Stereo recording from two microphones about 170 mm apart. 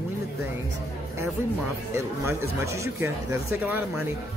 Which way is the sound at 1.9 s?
15° right (ahead or behind).